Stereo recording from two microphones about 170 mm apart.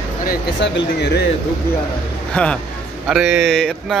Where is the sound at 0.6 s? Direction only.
80° left.